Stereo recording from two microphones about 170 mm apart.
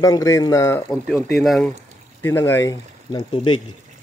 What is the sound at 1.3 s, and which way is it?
Speech, centre (ahead or behind).